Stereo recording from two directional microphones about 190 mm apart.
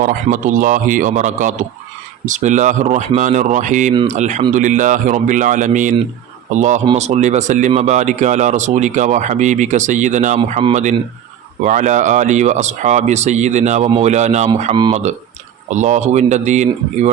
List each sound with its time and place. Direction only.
0.0 s a man's voice: 45° right (ahead or behind)
14.6 s speech: 25° right (ahead or behind)
15.7 s speech: 40° right (ahead or behind)